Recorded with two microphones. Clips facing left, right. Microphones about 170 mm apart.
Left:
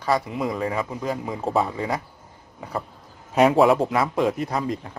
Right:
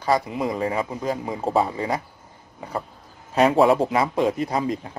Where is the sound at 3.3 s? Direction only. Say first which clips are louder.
Even; centre (ahead or behind).